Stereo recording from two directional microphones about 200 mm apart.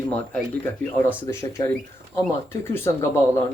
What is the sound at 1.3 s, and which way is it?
Speech, 15° left (ahead or behind).